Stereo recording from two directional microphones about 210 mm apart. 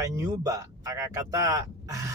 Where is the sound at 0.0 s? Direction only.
15° right (ahead or behind).